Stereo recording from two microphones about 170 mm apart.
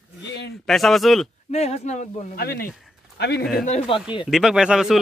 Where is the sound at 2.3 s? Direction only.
65° left (ahead or behind).